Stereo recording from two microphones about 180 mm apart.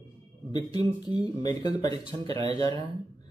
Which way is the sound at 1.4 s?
20° left (ahead or behind).